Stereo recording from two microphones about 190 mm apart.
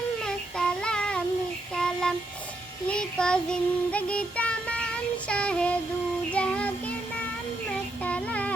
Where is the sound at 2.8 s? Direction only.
5° left (ahead or behind).